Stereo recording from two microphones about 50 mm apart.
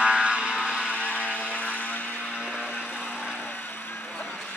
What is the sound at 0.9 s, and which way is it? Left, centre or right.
Vehicle, left.